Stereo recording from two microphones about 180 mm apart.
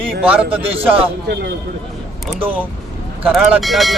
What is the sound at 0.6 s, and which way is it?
Speech, 30° right (ahead or behind).